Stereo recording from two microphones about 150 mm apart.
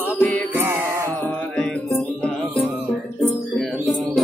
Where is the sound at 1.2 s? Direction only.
10° left (ahead or behind).